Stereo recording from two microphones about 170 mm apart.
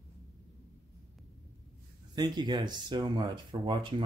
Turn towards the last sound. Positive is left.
turn(degrees=-30)  # may be behind; listen again after turning